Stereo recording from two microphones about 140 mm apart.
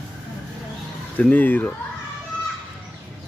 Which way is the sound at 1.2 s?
10° left (ahead or behind).